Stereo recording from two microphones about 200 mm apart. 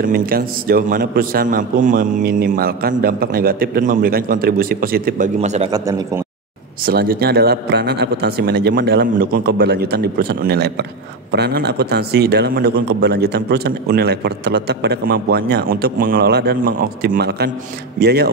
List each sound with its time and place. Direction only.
0.0 s a man's voice: 45° right (ahead or behind)
5.7 s a man's voice: 15° right (ahead or behind)
6.9 s a man's voice: 50° right (ahead or behind)